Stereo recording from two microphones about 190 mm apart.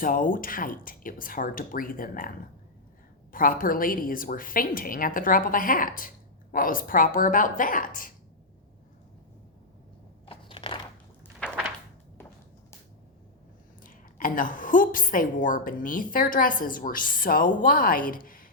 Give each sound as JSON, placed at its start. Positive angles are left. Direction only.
{"t": 0.0, "sound": "a woman's voice", "side_deg": 45}
{"t": 3.3, "sound": "a woman's voice", "side_deg": 45}
{"t": 10.2, "sound": "crunch", "side_deg": 25}
{"t": 11.4, "sound": "a sound", "side_deg": 5}
{"t": 13.8, "sound": "a woman's voice", "side_deg": 45}